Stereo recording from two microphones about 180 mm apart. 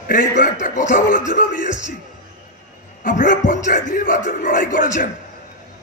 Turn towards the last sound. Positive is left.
turn(degrees=45)  # may be behind; listen again after turning